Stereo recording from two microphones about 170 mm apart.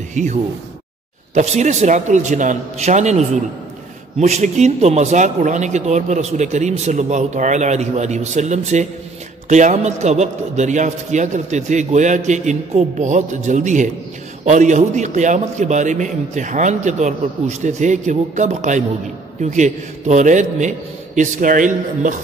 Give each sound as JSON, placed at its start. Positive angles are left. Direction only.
{"t": 0.1, "sound": "speech", "side_deg": -45}